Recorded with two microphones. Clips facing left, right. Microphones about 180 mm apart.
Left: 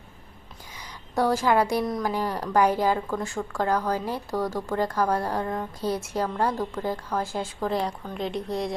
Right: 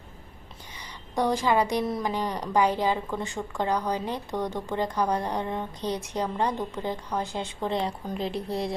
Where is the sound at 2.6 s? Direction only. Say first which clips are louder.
Left 2 dB; 10° left (ahead or behind).